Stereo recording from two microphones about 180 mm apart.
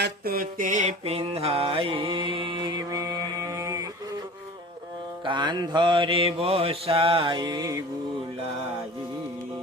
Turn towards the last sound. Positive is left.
turn(degrees=-20)  # may be behind; listen again after turning